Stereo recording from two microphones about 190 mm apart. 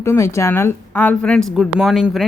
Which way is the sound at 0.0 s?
15° left (ahead or behind).